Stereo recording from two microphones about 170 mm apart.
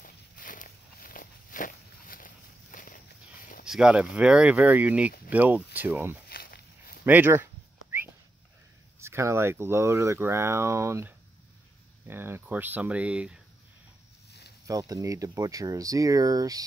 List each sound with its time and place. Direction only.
0.0 s walk: 55° left (ahead or behind)
3.6 s speech: 5° right (ahead or behind)
6.2 s walk: 60° left (ahead or behind)
7.1 s speech: 10° right (ahead or behind)
9.0 s speech: 15° right (ahead or behind)
14.7 s speech: 20° right (ahead or behind)